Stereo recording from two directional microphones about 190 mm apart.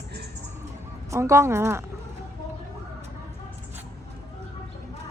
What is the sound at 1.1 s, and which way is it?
Speech, 15° right (ahead or behind).